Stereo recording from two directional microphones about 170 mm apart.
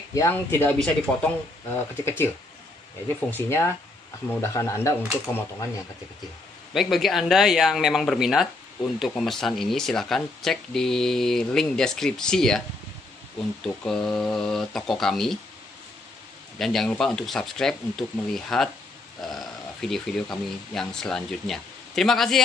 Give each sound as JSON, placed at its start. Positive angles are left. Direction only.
{"t": 0.1, "sound": "speech", "side_deg": 15}
{"t": 3.3, "sound": "speech", "side_deg": 15}
{"t": 6.7, "sound": "speech", "side_deg": 0}
{"t": 13.8, "sound": "speech", "side_deg": 5}
{"t": 16.5, "sound": "speech", "side_deg": 0}